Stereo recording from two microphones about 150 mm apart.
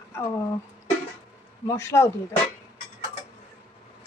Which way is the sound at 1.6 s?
15° left (ahead or behind).